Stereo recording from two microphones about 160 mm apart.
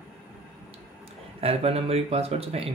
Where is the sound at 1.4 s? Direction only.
40° right (ahead or behind).